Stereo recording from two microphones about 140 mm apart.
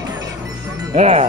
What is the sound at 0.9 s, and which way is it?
Speech, 50° right (ahead or behind).